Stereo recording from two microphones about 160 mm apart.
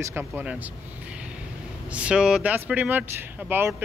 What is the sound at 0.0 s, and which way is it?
Speech, 15° right (ahead or behind).